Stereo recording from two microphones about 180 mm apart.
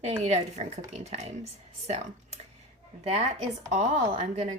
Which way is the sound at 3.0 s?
35° right (ahead or behind).